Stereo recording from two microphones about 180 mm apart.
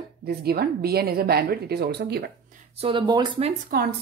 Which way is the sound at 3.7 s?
60° right (ahead or behind).